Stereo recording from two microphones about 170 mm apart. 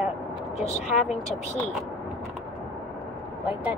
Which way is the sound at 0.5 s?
40° left (ahead or behind).